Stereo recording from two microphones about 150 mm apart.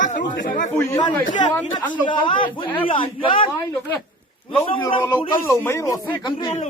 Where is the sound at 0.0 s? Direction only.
60° left (ahead or behind).